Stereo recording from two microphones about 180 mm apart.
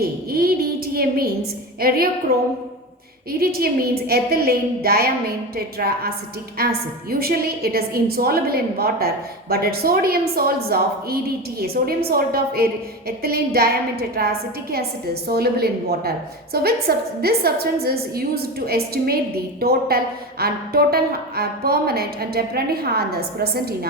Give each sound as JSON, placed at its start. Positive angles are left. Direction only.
{"t": 0.0, "sound": "a woman's voice", "side_deg": -55}
{"t": 2.3, "sound": "a woman's voice", "side_deg": -55}